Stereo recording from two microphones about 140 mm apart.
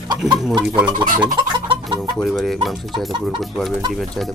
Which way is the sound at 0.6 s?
10° right (ahead or behind).